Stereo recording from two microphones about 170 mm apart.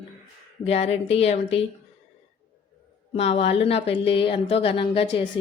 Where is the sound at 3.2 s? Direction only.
35° left (ahead or behind).